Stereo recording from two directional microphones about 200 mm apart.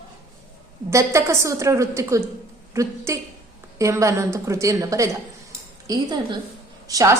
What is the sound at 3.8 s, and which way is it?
A woman's voice, 15° right (ahead or behind).